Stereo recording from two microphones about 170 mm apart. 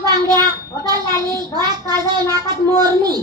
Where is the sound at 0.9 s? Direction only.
25° right (ahead or behind).